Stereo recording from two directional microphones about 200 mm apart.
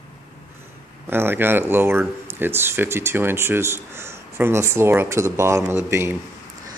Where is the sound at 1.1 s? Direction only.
10° right (ahead or behind).